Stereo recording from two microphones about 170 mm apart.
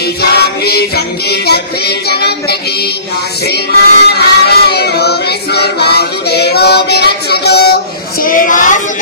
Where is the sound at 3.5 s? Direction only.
70° left (ahead or behind).